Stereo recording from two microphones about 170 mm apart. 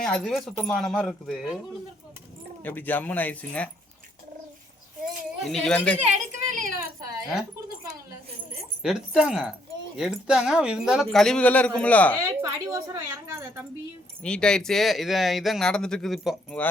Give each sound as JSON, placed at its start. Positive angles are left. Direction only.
{"t": 0.0, "sound": "speech", "side_deg": 5}
{"t": 2.6, "sound": "speech", "side_deg": 10}
{"t": 5.4, "sound": "speech", "side_deg": 0}
{"t": 6.1, "sound": "a sound", "side_deg": -45}
{"t": 8.8, "sound": "speech", "side_deg": -5}
{"t": 12.2, "sound": "a woman's voice", "side_deg": -20}
{"t": 14.2, "sound": "speech", "side_deg": 5}